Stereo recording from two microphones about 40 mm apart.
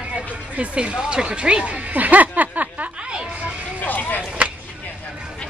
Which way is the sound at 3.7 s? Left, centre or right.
Left.